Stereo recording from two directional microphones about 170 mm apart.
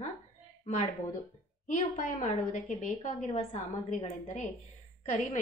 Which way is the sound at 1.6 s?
50° left (ahead or behind).